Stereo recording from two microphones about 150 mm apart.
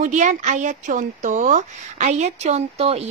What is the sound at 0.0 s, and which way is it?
Speech, 55° right (ahead or behind).